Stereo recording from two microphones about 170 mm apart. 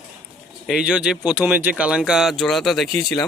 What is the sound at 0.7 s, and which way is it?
Speech, 5° right (ahead or behind).